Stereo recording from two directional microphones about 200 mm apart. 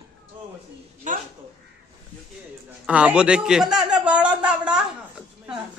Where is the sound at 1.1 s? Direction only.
40° right (ahead or behind).